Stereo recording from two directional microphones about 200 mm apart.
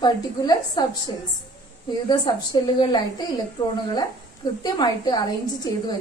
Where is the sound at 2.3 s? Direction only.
20° left (ahead or behind).